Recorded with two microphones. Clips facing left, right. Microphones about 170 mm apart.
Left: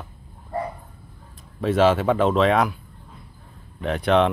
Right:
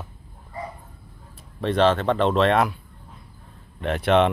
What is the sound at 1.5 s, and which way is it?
Speech, 5° left (ahead or behind).